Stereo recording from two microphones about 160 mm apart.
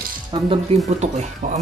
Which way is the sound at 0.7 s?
35° right (ahead or behind).